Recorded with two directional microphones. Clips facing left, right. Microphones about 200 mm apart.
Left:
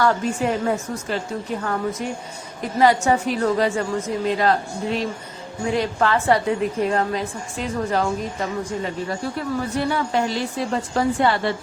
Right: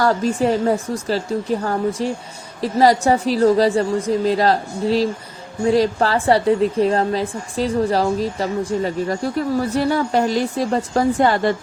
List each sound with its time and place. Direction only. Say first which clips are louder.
0.0 s a woman's voice: right 3 dB; 35° right (ahead or behind)